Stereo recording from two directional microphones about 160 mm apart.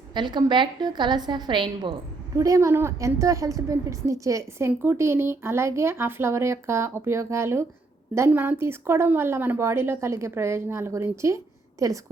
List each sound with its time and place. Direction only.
0.1 s a woman's voice: 30° right (ahead or behind)